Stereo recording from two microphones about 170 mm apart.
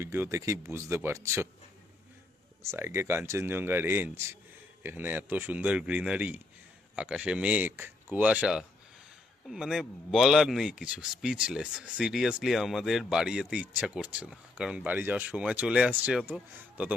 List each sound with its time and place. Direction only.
0.0 s a man's voice: 15° right (ahead or behind)
2.6 s a man's voice: 15° right (ahead or behind)